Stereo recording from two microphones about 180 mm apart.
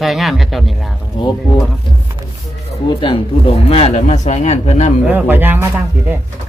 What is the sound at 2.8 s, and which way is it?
Speech, 30° left (ahead or behind).